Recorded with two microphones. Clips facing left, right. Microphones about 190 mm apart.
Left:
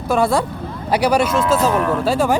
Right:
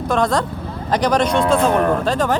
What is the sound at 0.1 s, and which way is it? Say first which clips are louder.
Speech: left 2 dB; 10° left (ahead or behind).